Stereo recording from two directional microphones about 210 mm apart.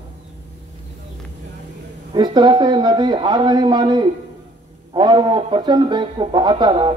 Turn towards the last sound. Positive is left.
turn(degrees=-25)  # may be behind; listen again after turning